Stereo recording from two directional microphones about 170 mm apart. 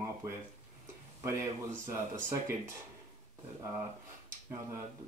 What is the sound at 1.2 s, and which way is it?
Speech, 15° right (ahead or behind).